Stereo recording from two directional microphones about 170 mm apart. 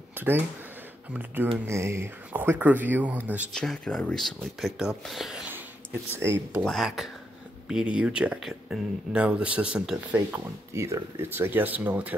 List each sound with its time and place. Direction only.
1.1 s speech: 10° right (ahead or behind)
3.5 s speech: 5° left (ahead or behind)
6.2 s speech: 15° right (ahead or behind)
6.6 s speech: centre (ahead or behind)
10.1 s speech: 15° right (ahead or behind)